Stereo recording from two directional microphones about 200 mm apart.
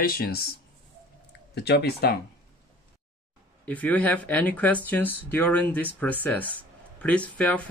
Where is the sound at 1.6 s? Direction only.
55° left (ahead or behind).